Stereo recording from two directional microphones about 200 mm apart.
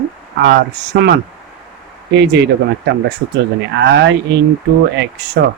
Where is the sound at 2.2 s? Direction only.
60° right (ahead or behind).